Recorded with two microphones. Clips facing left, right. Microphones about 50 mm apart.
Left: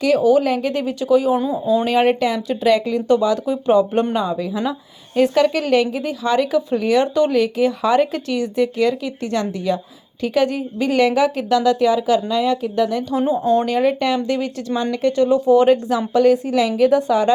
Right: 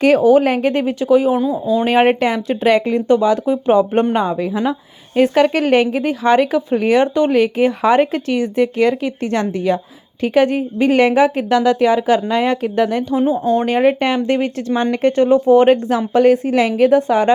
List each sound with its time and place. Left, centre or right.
0.0 s speech: right
1.4 s speech: centre
1.8 s speech: right
3.1 s speech: right
13.4 s speech: right